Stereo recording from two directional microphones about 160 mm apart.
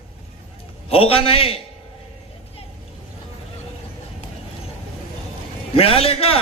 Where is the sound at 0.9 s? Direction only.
35° left (ahead or behind).